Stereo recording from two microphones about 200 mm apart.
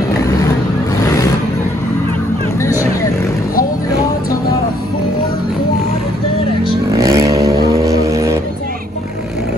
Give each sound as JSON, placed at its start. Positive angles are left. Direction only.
{"t": 6.9, "sound": "vehicle", "side_deg": -15}